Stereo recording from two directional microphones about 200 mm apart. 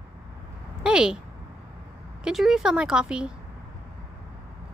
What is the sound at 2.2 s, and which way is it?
Speech, centre (ahead or behind).